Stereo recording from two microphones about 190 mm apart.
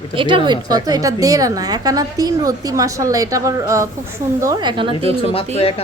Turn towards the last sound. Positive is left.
turn(degrees=30)  # may be behind; listen again after turning